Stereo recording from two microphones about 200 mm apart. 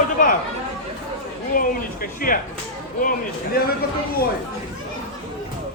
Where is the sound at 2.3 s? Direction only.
45° left (ahead or behind).